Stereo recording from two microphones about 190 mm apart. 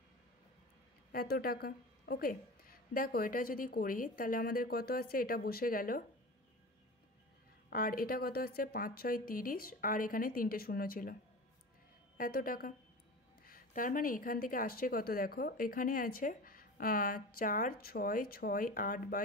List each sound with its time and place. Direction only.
1.1 s speech: 55° left (ahead or behind)
7.7 s speech: 50° left (ahead or behind)
12.2 s speech: 50° left (ahead or behind)